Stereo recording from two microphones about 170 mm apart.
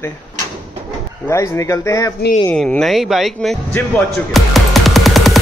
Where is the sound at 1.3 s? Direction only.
15° left (ahead or behind).